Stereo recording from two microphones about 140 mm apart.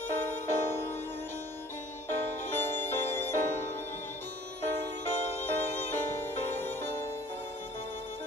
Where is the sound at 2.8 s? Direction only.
15° left (ahead or behind).